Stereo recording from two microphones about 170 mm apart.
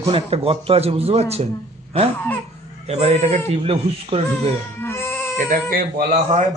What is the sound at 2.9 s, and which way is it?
A man's voice, 40° right (ahead or behind).